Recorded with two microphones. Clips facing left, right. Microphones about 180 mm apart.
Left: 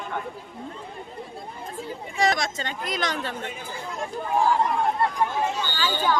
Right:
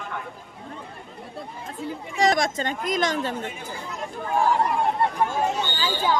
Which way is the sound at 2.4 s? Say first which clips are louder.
Right 5 dB; 50° right (ahead or behind).